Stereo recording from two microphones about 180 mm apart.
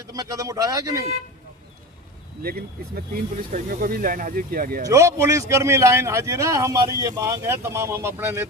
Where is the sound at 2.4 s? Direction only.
55° right (ahead or behind).